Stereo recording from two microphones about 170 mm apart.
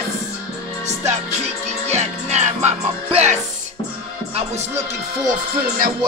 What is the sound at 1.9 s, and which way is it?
Music, 40° right (ahead or behind).